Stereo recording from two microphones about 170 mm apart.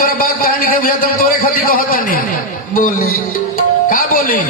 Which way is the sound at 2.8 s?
55° left (ahead or behind).